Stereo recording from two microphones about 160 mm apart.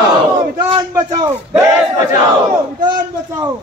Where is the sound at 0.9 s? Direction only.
20° right (ahead or behind).